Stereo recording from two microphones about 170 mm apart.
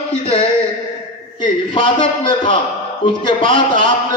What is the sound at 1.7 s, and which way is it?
A man's voice, 30° left (ahead or behind).